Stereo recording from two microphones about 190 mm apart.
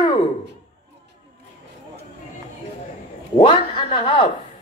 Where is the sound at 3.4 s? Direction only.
25° left (ahead or behind).